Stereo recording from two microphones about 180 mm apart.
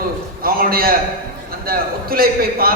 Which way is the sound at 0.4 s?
55° right (ahead or behind).